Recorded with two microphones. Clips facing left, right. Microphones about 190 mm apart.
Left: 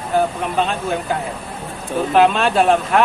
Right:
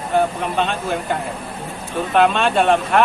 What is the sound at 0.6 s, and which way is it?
Speech, centre (ahead or behind).